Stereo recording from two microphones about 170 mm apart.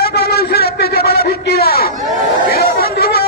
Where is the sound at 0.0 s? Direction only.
65° left (ahead or behind).